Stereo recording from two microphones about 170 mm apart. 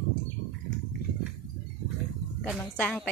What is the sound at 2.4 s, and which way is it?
Speech, 10° left (ahead or behind).